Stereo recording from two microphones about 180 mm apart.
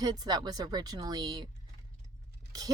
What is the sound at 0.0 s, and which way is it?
Speech, 20° right (ahead or behind).